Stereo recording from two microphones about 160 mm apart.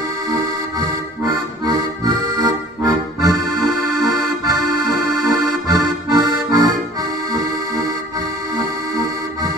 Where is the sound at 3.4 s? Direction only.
Centre (ahead or behind).